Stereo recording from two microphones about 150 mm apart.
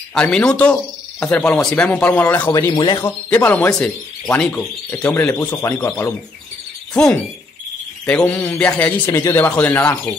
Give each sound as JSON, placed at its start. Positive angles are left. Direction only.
{"t": 0.1, "sound": "speech", "side_deg": 5}
{"t": 2.7, "sound": "speech", "side_deg": 30}
{"t": 3.0, "sound": "speech", "side_deg": 10}
{"t": 6.9, "sound": "speech", "side_deg": 5}